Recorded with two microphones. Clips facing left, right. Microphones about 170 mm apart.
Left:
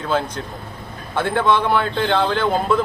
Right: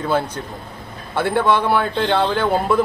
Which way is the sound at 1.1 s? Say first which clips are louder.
Right 1 dB; 10° right (ahead or behind).